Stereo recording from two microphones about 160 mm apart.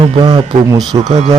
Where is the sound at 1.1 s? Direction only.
45° right (ahead or behind).